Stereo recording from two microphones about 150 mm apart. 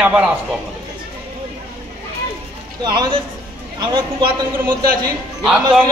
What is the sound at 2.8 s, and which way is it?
A man's voice, 30° right (ahead or behind).